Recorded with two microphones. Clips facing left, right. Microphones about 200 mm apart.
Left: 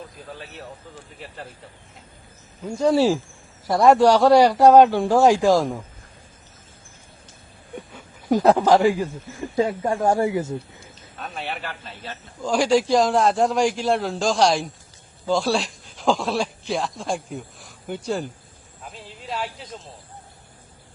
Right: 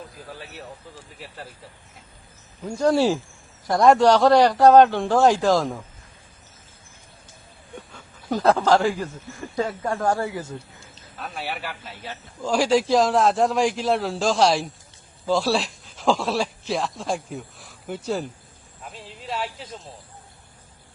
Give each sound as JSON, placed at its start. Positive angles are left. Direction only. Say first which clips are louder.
{"t": 2.6, "sound": "a man's voice", "louder": "left 1 dB", "side_deg": 0}
{"t": 7.9, "sound": "speech", "louder": "left 6 dB", "side_deg": 15}
{"t": 11.2, "sound": "a man's voice", "louder": "even", "side_deg": 0}
{"t": 18.8, "sound": "snake", "louder": "even", "side_deg": 0}